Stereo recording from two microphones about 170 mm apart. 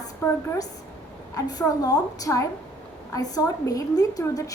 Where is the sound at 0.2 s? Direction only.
15° left (ahead or behind).